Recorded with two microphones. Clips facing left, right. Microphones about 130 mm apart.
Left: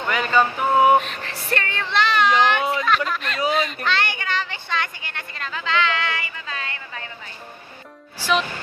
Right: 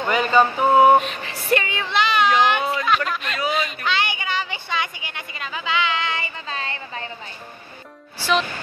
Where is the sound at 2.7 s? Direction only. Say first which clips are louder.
Even; 5° right (ahead or behind); by 7.1 s 30° right (ahead or behind).